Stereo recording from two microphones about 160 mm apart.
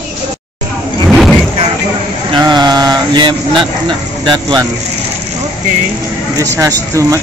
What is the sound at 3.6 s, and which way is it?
Speech, 30° right (ahead or behind).